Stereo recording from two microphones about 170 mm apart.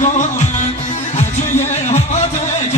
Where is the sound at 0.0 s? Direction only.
45° left (ahead or behind).